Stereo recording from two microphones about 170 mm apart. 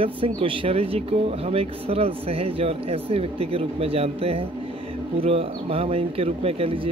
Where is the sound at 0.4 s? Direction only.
30° right (ahead or behind).